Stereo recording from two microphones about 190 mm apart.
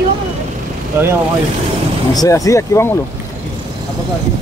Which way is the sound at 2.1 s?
20° left (ahead or behind).